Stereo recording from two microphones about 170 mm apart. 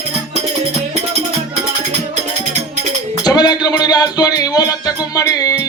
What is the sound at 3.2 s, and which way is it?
Music, 25° left (ahead or behind).